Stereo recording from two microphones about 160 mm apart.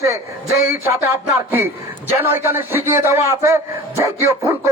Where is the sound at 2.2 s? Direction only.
15° right (ahead or behind).